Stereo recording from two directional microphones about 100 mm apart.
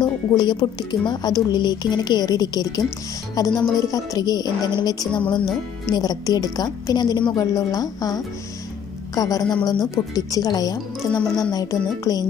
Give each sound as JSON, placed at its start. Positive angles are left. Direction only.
{"t": 0.0, "sound": "a woman's voice", "side_deg": 45}